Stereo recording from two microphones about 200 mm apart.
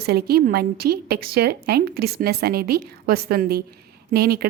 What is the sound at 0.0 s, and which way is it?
A woman's voice, 50° right (ahead or behind).